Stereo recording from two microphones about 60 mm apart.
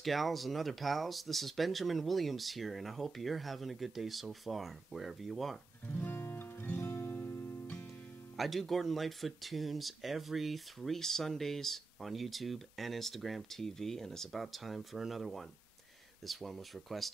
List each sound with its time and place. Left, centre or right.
0.0 s speech: centre
5.9 s music: left
8.4 s speech: centre